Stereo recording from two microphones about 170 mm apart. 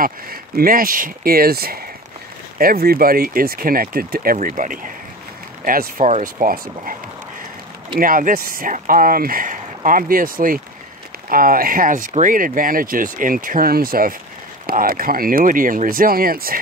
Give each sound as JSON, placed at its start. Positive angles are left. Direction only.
{"t": 0.0, "sound": "speech", "side_deg": -60}
{"t": 8.0, "sound": "speech", "side_deg": -55}